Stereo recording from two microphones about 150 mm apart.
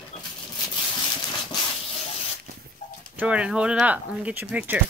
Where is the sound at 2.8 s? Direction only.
55° left (ahead or behind).